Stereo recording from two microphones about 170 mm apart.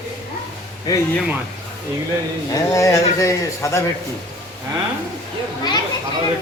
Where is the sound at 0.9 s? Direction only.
20° left (ahead or behind).